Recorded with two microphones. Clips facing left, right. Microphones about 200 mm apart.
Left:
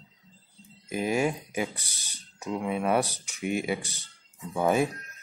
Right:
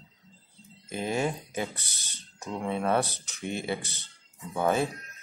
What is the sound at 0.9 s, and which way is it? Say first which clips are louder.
Speech: left 3 dB; 10° left (ahead or behind).